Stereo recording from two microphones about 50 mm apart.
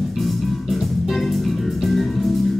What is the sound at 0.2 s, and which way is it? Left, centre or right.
Music, centre.